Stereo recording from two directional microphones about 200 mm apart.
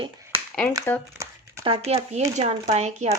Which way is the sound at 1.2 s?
15° right (ahead or behind).